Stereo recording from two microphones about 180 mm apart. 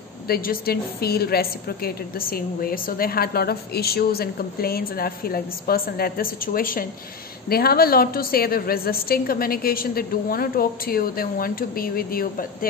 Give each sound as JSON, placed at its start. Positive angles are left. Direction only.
{"t": 0.3, "sound": "a woman's voice", "side_deg": 55}